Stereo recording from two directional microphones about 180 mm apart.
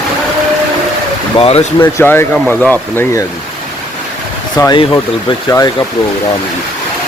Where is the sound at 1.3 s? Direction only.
30° left (ahead or behind).